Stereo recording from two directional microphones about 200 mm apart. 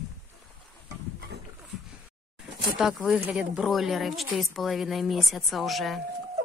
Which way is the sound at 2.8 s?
Centre (ahead or behind).